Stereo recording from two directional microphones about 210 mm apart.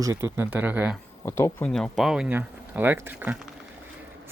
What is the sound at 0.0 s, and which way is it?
Speech, 15° right (ahead or behind).